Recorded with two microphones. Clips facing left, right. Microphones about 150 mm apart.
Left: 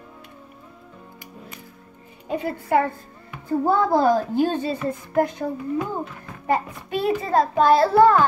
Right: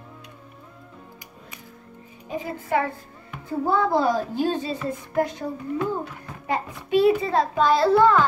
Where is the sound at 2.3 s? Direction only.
60° left (ahead or behind).